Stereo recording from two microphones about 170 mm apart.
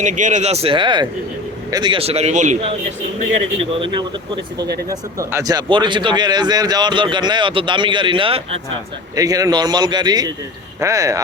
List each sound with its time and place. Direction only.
0.0 s speech: 45° right (ahead or behind)
4.9 s a man's voice: 20° right (ahead or behind)